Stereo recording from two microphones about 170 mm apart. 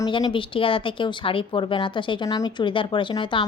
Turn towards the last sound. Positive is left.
turn(degrees=30)  # may be behind; listen again after turning